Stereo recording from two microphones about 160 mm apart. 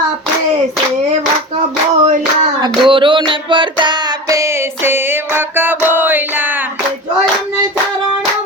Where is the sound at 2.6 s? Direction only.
30° right (ahead or behind); by 6.7 s 10° right (ahead or behind).